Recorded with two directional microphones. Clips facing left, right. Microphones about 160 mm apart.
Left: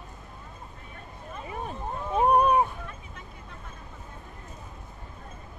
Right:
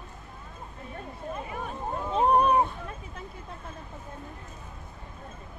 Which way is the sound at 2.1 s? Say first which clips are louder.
Left 1 dB; 15° left (ahead or behind).